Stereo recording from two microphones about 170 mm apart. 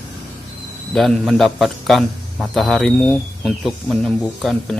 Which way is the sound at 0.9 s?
Centre (ahead or behind).